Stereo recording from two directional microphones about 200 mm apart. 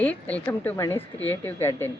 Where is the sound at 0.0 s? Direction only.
5° left (ahead or behind).